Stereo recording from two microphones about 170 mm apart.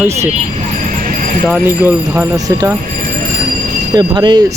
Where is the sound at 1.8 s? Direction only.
15° right (ahead or behind).